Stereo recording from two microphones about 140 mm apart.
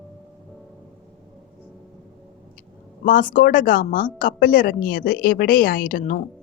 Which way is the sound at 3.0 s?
75° left (ahead or behind).